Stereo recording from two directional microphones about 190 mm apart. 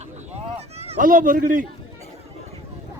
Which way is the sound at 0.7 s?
35° right (ahead or behind).